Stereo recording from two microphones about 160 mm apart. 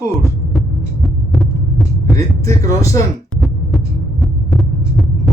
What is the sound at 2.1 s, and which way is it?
Speech, 20° left (ahead or behind).